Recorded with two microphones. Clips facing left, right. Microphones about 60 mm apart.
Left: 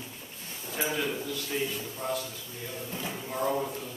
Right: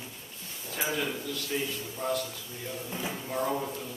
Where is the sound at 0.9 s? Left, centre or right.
Centre.